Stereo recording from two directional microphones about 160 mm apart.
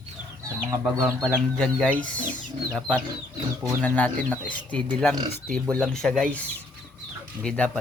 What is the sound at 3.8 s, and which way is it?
Speech, 10° left (ahead or behind).